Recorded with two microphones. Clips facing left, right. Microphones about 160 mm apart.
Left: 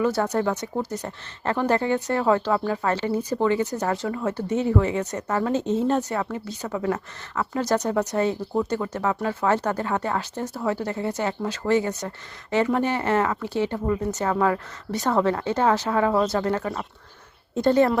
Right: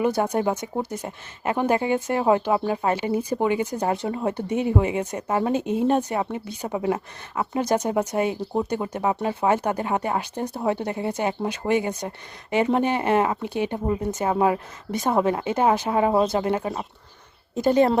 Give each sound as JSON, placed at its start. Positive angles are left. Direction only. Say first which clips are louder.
{"t": 0.2, "sound": "speech", "louder": "right 1 dB", "side_deg": -15}
{"t": 6.7, "sound": "speech", "louder": "right 2 dB", "side_deg": -25}